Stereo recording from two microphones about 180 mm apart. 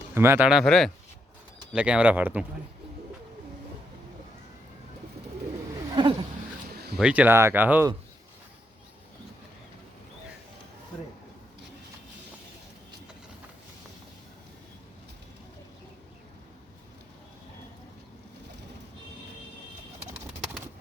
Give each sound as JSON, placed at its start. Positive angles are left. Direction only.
{"t": 0.1, "sound": "speech", "side_deg": -15}
{"t": 5.9, "sound": "roaring cats", "side_deg": -25}
{"t": 6.9, "sound": "speech", "side_deg": -5}